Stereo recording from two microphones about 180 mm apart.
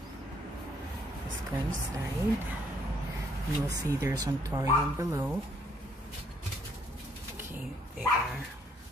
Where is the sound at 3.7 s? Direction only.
15° right (ahead or behind).